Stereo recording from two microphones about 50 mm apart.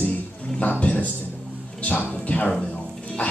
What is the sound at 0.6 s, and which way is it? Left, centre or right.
Speech, left.